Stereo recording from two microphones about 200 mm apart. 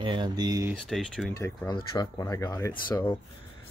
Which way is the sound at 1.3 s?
15° left (ahead or behind).